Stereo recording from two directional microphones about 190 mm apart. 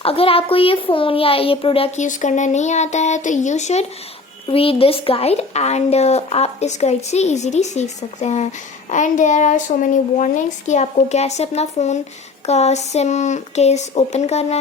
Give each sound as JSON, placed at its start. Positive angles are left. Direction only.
{"t": 0.0, "sound": "speech", "side_deg": 30}